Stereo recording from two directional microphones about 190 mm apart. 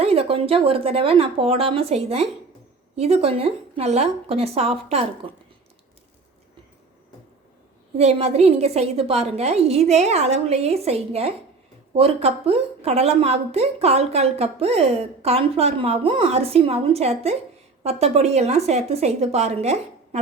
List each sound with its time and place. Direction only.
0.0 s a woman's voice: 30° right (ahead or behind)
7.9 s a woman's voice: 35° right (ahead or behind)